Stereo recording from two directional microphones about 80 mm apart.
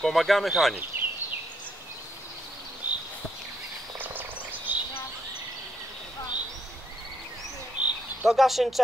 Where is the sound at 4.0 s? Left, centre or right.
Right.